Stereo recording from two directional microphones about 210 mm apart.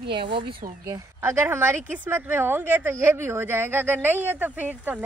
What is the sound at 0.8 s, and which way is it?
Speech, 10° right (ahead or behind).